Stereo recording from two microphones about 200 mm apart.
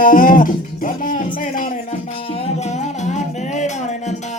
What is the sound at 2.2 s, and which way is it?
Music, 30° left (ahead or behind).